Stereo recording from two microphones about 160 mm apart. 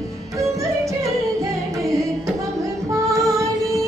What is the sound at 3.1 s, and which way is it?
Female singing, 20° right (ahead or behind).